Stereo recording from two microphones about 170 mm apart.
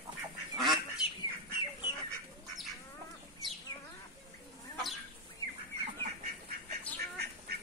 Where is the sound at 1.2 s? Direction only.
25° left (ahead or behind).